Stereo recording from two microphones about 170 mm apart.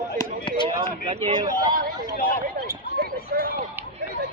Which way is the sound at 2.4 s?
60° right (ahead or behind).